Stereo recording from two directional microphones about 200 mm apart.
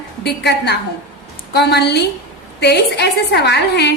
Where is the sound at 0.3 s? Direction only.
55° left (ahead or behind).